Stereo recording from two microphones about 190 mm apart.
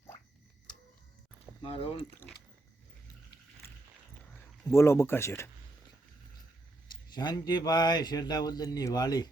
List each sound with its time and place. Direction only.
1.6 s speech: 30° left (ahead or behind)
3.6 s a sound: 15° left (ahead or behind)
4.7 s speech: 15° left (ahead or behind)
6.9 s speech: 25° left (ahead or behind)